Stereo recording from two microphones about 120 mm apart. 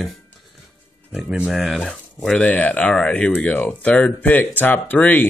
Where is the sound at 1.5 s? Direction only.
Centre (ahead or behind).